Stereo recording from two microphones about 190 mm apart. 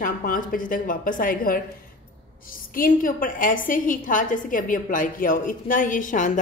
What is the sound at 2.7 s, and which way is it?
A woman's voice, 45° left (ahead or behind).